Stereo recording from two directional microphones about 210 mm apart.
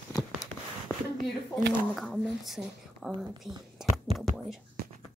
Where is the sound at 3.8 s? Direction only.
Centre (ahead or behind).